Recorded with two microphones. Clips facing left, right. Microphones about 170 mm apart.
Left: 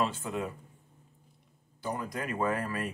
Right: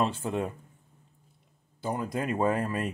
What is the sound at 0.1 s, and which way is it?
Speech, 30° right (ahead or behind).